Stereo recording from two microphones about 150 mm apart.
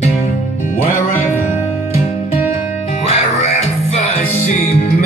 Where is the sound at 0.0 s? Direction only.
55° left (ahead or behind).